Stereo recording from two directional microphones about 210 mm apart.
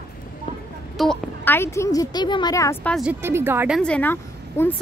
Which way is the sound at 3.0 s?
10° right (ahead or behind).